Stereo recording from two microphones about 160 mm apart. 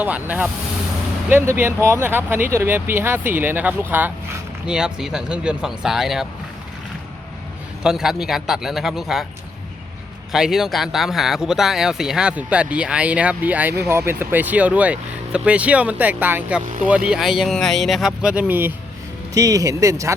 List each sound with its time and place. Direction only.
0.0 s speech: 10° right (ahead or behind)
7.8 s speech: 5° right (ahead or behind)
10.3 s speech: 5° right (ahead or behind); by 20.1 s 20° right (ahead or behind)